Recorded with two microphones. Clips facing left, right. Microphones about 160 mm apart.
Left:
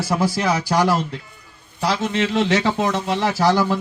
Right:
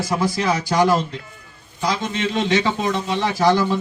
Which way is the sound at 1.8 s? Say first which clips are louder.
Left 2 dB; 70° left (ahead or behind).